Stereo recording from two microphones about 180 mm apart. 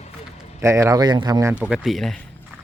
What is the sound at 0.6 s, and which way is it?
Speech, 15° right (ahead or behind).